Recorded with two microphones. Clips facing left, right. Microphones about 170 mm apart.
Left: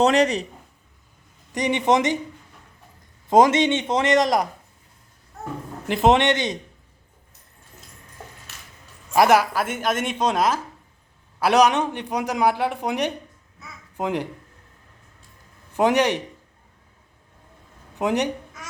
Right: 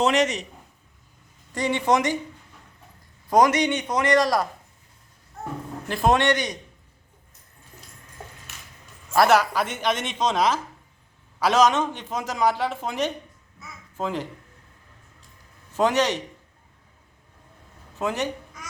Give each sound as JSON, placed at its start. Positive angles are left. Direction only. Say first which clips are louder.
{"t": 0.0, "sound": "speech", "louder": "left 3 dB", "side_deg": 35}
{"t": 1.5, "sound": "speech", "louder": "left 2 dB", "side_deg": 20}
{"t": 3.2, "sound": "speech", "louder": "left 3 dB", "side_deg": 25}
{"t": 5.9, "sound": "speech", "louder": "left 3 dB", "side_deg": 20}
{"t": 9.1, "sound": "a man's voice", "louder": "left 1 dB", "side_deg": 15}
{"t": 15.7, "sound": "speech", "louder": "left 2 dB", "side_deg": 15}
{"t": 18.0, "sound": "speech", "louder": "left 4 dB", "side_deg": 15}